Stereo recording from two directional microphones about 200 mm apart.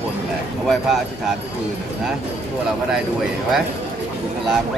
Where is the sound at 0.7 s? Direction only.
Centre (ahead or behind).